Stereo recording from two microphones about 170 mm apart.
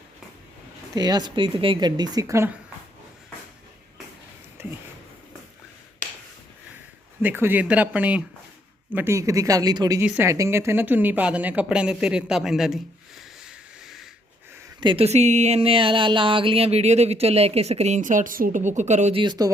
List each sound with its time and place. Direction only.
0.9 s speech: 25° right (ahead or behind)
7.2 s speech: 10° right (ahead or behind)
10.0 s speech: 10° right (ahead or behind)
14.8 s speech: 30° right (ahead or behind)
19.2 s speech: 25° right (ahead or behind)